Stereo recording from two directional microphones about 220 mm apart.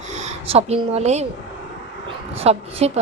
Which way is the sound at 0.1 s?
30° right (ahead or behind).